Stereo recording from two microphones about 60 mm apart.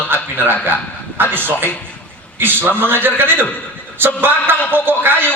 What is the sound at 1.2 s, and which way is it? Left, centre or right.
A man's voice, right.